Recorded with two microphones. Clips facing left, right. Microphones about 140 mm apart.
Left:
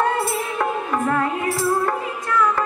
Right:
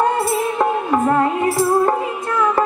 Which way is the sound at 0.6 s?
25° right (ahead or behind).